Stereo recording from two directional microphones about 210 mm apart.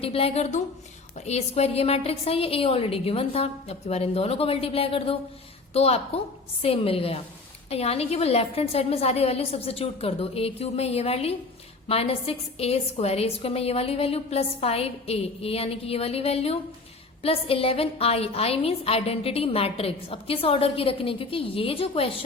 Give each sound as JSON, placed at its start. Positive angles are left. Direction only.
{"t": 0.0, "sound": "a woman's voice", "side_deg": 25}